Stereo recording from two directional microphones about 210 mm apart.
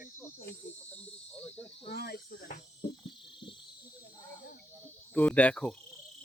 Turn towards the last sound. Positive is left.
turn(degrees=5)  # may be behind; listen again after turning